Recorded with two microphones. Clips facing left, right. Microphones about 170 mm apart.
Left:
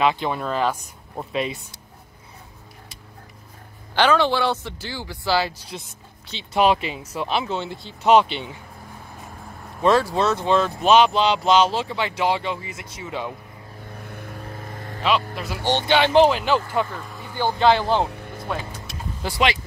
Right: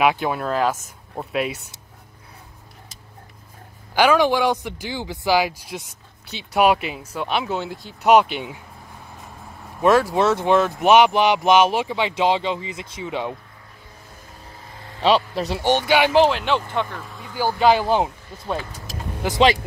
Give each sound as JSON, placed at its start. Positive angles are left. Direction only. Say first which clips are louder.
{"t": 0.0, "sound": "speech", "louder": "right 2 dB", "side_deg": -10}
{"t": 3.9, "sound": "speech", "louder": "right 2 dB", "side_deg": -10}
{"t": 9.8, "sound": "speech", "louder": "right 2 dB", "side_deg": 0}
{"t": 10.0, "sound": "speech", "louder": "right 3 dB", "side_deg": -15}
{"t": 13.9, "sound": "vehicle", "louder": "left 10 dB", "side_deg": 65}
{"t": 15.0, "sound": "speech", "louder": "right 4 dB", "side_deg": -35}
{"t": 15.9, "sound": "speech", "louder": "left 2 dB", "side_deg": -5}
{"t": 18.1, "sound": "music", "louder": "left 6 dB", "side_deg": 60}